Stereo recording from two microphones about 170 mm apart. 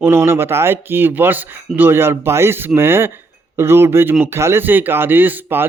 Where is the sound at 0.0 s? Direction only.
15° right (ahead or behind).